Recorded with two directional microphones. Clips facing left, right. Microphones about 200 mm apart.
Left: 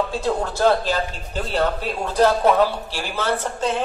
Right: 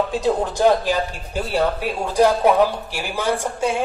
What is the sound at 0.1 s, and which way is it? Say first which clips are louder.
Speech: right 3 dB; 15° right (ahead or behind).